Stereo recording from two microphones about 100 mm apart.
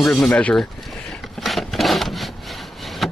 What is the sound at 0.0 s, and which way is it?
Speech, 5° left (ahead or behind).